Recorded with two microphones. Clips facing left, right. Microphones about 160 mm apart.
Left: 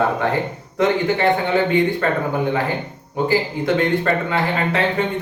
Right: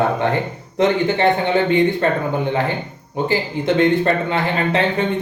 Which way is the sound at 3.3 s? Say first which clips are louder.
Even; 25° right (ahead or behind).